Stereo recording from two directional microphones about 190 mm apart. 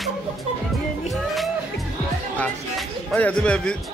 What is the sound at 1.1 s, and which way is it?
Music, centre (ahead or behind).